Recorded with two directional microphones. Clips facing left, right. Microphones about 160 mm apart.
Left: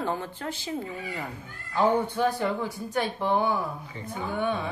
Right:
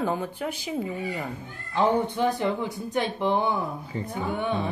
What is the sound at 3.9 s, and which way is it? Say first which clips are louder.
Speech: right 7 dB; 35° right (ahead or behind).